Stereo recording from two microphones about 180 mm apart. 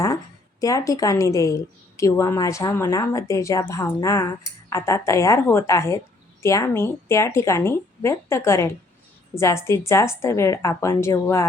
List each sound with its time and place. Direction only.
0.6 s a woman's voice: 20° left (ahead or behind)